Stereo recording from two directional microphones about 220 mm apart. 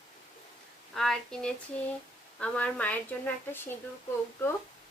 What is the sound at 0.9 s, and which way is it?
A woman's voice, centre (ahead or behind).